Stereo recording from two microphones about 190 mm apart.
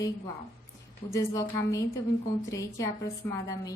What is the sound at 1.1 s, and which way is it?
A woman's voice, 15° left (ahead or behind).